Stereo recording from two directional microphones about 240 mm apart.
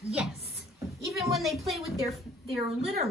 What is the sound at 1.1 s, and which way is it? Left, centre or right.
A woman's voice, centre.